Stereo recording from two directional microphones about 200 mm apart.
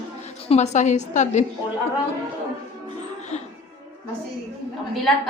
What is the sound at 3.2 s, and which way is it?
Music, 35° left (ahead or behind).